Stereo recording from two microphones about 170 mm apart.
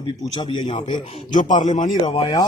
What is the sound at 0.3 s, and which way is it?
Speech, 30° left (ahead or behind).